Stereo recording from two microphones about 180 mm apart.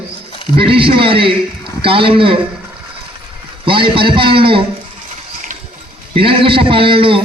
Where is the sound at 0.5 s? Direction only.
30° right (ahead or behind).